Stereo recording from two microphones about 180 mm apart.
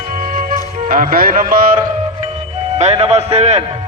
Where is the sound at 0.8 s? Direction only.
50° right (ahead or behind).